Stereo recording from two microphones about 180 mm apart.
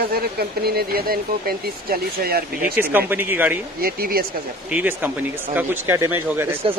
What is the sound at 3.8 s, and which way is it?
Speech, 55° right (ahead or behind).